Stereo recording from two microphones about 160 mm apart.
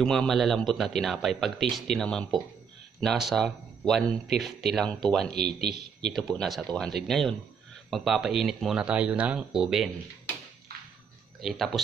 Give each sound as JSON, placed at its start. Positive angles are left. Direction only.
{"t": 0.0, "sound": "speech", "side_deg": 5}
{"t": 5.4, "sound": "speech", "side_deg": -80}
{"t": 6.1, "sound": "speech", "side_deg": 0}
{"t": 11.4, "sound": "speech", "side_deg": 0}